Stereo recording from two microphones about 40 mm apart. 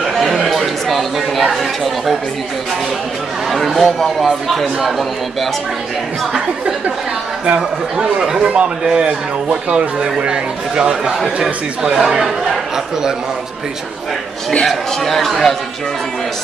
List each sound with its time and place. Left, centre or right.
0.0 s a sound: centre
0.5 s chatter: centre
3.4 s speech: centre
4.7 s speech: centre
7.4 s speech: right
14.7 s speech: centre